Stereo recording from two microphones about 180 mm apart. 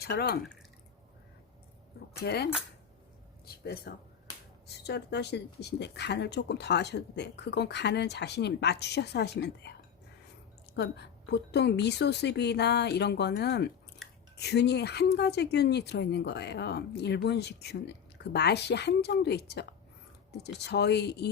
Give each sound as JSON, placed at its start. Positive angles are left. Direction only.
{"t": 0.0, "sound": "speech", "side_deg": 65}
{"t": 2.1, "sound": "speech", "side_deg": 65}
{"t": 10.8, "sound": "speech", "side_deg": 70}